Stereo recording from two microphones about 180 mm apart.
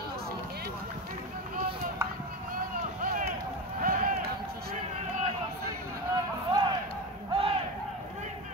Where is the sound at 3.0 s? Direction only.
50° right (ahead or behind).